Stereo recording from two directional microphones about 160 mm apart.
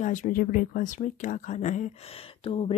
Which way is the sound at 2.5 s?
35° left (ahead or behind).